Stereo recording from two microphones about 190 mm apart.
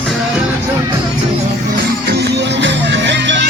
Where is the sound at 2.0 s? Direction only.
60° right (ahead or behind).